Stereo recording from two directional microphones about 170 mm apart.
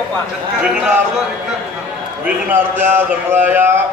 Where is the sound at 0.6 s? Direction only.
5° right (ahead or behind).